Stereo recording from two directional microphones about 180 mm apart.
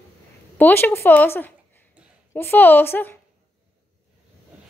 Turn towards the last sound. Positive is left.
turn(degrees=10)  # may be behind; listen again after turning